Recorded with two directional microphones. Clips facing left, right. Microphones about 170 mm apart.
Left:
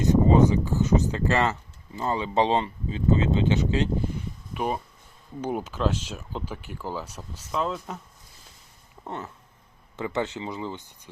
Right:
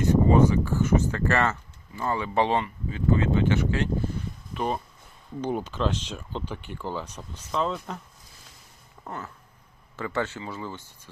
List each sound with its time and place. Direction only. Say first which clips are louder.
0.0 s speech: left 1 dB; 20° left (ahead or behind)
9.0 s speech: left 2 dB; 20° left (ahead or behind)